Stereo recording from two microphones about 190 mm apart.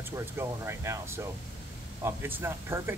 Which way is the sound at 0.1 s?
15° right (ahead or behind).